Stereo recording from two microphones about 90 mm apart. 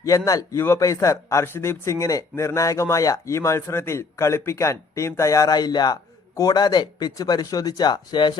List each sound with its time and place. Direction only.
0.3 s speech: 40° left (ahead or behind); by 8.4 s 55° left (ahead or behind)